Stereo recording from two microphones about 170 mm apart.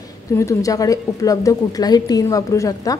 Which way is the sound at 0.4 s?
20° left (ahead or behind).